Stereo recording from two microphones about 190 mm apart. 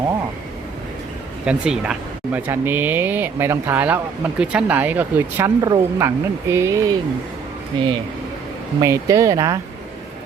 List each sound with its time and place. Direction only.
1.5 s speech: 5° right (ahead or behind)